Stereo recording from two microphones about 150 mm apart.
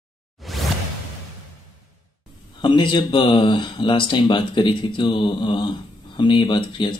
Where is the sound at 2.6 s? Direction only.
30° left (ahead or behind).